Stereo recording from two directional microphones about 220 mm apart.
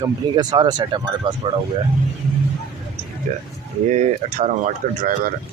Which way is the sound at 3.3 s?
35° right (ahead or behind).